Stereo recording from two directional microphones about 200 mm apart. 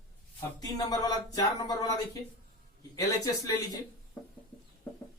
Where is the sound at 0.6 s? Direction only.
20° left (ahead or behind).